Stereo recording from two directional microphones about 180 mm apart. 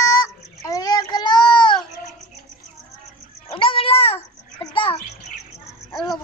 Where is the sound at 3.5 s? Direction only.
30° left (ahead or behind).